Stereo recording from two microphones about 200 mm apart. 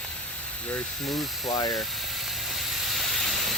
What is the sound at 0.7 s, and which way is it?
Speech, centre (ahead or behind).